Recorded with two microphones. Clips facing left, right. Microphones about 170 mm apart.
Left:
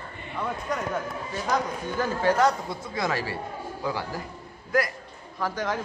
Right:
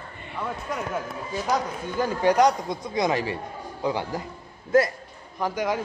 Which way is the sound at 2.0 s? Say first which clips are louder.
Right 3 dB; 15° right (ahead or behind).